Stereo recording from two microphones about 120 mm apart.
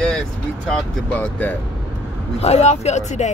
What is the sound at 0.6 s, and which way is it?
Speech, 15° left (ahead or behind).